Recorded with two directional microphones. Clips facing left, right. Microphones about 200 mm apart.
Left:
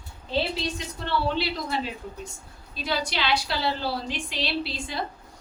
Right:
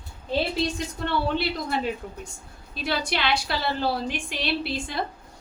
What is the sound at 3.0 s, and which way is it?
A woman's voice, 55° right (ahead or behind).